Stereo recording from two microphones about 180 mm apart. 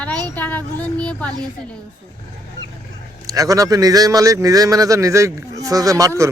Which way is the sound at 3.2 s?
20° right (ahead or behind).